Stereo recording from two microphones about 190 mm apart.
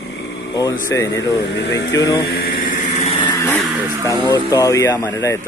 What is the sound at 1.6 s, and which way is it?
Speech, 70° left (ahead or behind).